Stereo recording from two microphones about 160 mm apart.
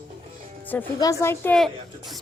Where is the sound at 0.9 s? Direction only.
20° left (ahead or behind).